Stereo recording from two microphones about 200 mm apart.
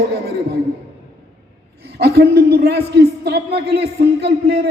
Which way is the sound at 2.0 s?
55° right (ahead or behind).